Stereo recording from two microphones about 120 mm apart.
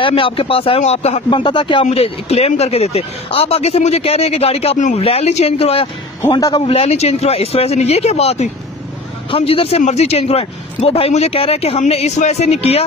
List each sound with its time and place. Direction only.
0.0 s speech: 50° left (ahead or behind)
1.3 s speech: 40° left (ahead or behind)
1.9 s speech: 60° left (ahead or behind)
5.0 s speech: 60° left (ahead or behind)
6.4 s speech: 35° left (ahead or behind)
6.7 s speech: 55° left (ahead or behind)
9.3 s speech: 55° left (ahead or behind)
9.8 s speech: 70° left (ahead or behind)